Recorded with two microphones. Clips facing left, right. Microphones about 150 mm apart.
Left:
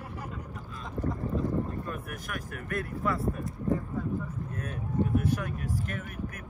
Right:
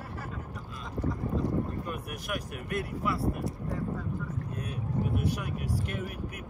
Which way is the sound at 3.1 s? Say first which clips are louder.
Right 1 dB; 90° right.